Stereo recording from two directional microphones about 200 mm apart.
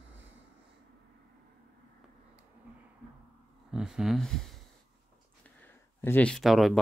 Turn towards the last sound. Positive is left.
turn(degrees=0)  # may be behind; listen again after turning